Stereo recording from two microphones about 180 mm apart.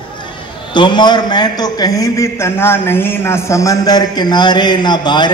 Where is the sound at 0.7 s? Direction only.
25° left (ahead or behind).